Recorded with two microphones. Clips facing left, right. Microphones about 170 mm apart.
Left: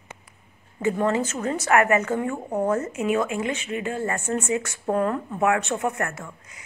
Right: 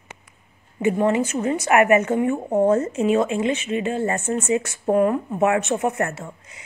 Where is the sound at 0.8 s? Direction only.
20° right (ahead or behind).